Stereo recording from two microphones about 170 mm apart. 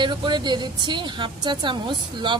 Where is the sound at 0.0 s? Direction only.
25° right (ahead or behind).